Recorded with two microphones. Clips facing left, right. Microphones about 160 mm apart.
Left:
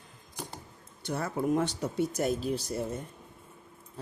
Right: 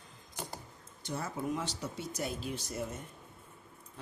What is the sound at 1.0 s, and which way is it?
Speech, 65° left (ahead or behind).